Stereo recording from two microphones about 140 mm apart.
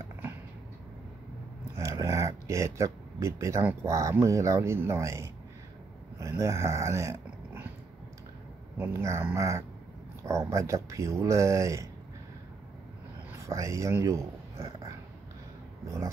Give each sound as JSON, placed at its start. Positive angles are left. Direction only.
{"t": 1.8, "sound": "speech", "side_deg": -20}
{"t": 6.1, "sound": "a sound", "side_deg": -20}
{"t": 8.7, "sound": "speech", "side_deg": -15}
{"t": 13.3, "sound": "speech", "side_deg": -20}